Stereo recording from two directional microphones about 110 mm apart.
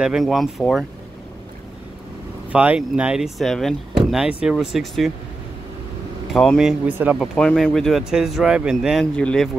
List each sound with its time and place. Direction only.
0.0 s speech: centre (ahead or behind)
2.5 s speech: 10° right (ahead or behind)
6.3 s speech: 5° left (ahead or behind)
6.9 s speech: 20° right (ahead or behind)
7.3 s speech: 5° left (ahead or behind)
9.0 s speech: 10° left (ahead or behind)